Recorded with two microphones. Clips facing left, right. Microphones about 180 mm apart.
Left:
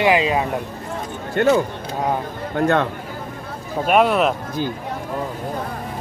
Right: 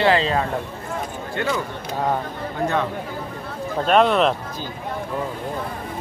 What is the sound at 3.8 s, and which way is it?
Speech, 10° left (ahead or behind).